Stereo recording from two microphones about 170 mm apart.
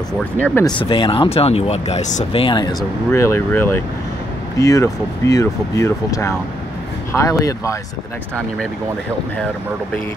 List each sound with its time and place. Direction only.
0.7 s speech: 30° left (ahead or behind); by 2.4 s 45° left (ahead or behind)
2.4 s speech: 25° left (ahead or behind)
3.1 s speech: 15° left (ahead or behind)